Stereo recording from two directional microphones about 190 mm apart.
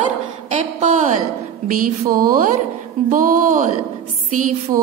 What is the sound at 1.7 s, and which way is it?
A woman's voice, 45° right (ahead or behind).